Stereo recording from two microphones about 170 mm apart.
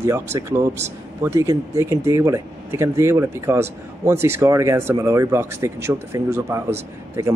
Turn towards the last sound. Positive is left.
turn(degrees=-15)  # may be behind; listen again after turning